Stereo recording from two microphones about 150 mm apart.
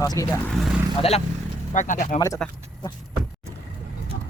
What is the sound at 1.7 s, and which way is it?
Speech, 60° left (ahead or behind).